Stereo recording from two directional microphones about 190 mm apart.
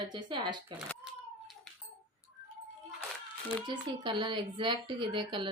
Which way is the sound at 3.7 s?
25° right (ahead or behind).